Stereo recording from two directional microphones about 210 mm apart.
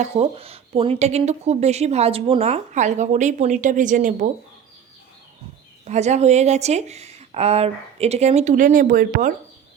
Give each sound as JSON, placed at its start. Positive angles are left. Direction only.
{"t": 0.0, "sound": "speech", "side_deg": -30}
{"t": 5.8, "sound": "speech", "side_deg": -35}